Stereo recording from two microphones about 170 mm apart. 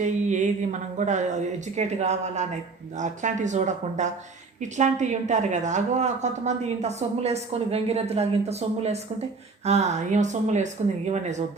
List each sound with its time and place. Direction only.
0.0 s a woman's voice: 45° right (ahead or behind)